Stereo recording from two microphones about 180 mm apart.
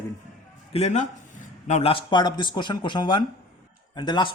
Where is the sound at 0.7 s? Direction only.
35° left (ahead or behind).